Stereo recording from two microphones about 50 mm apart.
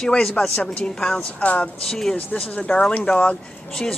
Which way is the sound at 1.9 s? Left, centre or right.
Centre.